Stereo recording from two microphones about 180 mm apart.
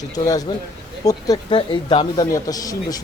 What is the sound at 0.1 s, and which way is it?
Speech, 20° left (ahead or behind).